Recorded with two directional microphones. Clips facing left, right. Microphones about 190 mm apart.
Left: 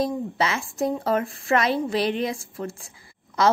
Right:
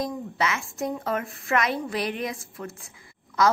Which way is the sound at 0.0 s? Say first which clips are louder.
Left 4 dB; 30° left (ahead or behind).